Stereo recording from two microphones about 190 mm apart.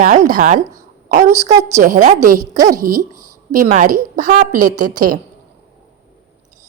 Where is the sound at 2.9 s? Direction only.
15° right (ahead or behind).